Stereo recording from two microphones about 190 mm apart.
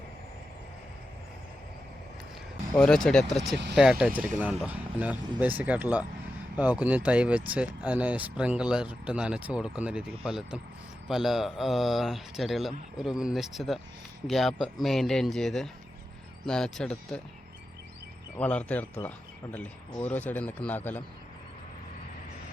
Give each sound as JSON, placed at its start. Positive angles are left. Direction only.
{"t": 2.7, "sound": "speech", "side_deg": 5}
{"t": 3.5, "sound": "speech", "side_deg": -65}
{"t": 3.8, "sound": "speech", "side_deg": -5}
{"t": 18.3, "sound": "speech", "side_deg": 10}